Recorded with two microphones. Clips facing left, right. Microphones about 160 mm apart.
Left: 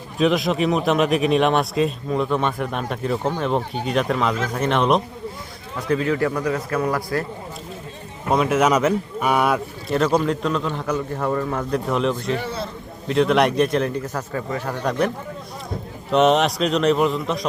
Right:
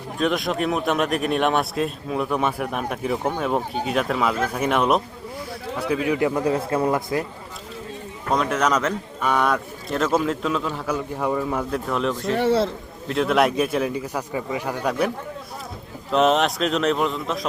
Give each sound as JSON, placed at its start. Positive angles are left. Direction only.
{"t": 0.2, "sound": "a man's voice", "side_deg": 0}
{"t": 6.4, "sound": "a man's voice", "side_deg": -30}
{"t": 8.3, "sound": "speech", "side_deg": 5}
{"t": 12.4, "sound": "a man's voice", "side_deg": -85}
{"t": 13.1, "sound": "a man's voice", "side_deg": 0}
{"t": 16.1, "sound": "speech", "side_deg": 0}